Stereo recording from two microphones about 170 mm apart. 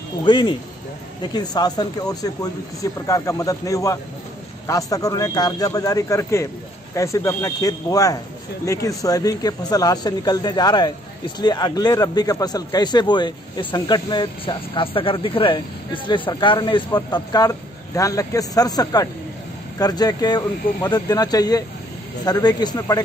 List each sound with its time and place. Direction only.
0.2 s a man's voice: 25° left (ahead or behind)